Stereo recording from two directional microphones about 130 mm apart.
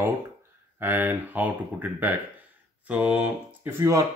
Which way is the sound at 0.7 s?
15° right (ahead or behind).